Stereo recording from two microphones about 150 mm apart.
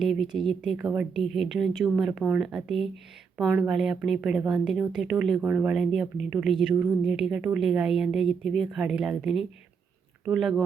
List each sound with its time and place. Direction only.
0.0 s a woman's voice: centre (ahead or behind)